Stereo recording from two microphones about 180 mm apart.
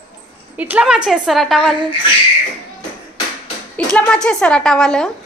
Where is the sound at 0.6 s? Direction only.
10° right (ahead or behind).